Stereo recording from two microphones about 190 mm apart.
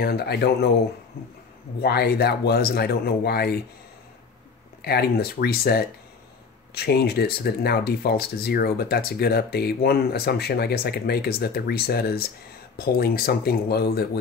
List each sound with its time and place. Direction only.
0.0 s speech: 55° left (ahead or behind)
4.8 s speech: 55° left (ahead or behind)